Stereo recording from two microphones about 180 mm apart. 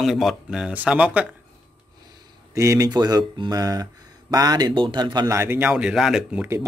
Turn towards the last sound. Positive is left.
turn(degrees=-10)  # may be behind; listen again after turning